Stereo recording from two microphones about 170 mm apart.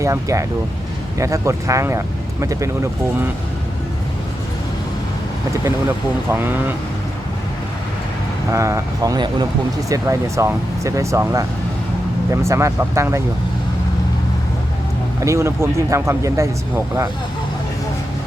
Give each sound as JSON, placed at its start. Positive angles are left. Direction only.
{"t": 0.0, "sound": "speech", "side_deg": -20}
{"t": 6.3, "sound": "speech", "side_deg": -10}
{"t": 8.4, "sound": "speech", "side_deg": -15}
{"t": 15.2, "sound": "speech", "side_deg": -15}